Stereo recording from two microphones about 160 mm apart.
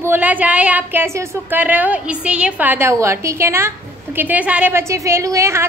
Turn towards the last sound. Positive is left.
turn(degrees=-20)  # may be behind; listen again after turning